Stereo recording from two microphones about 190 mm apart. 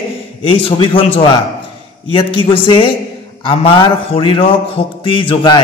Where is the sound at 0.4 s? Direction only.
30° left (ahead or behind).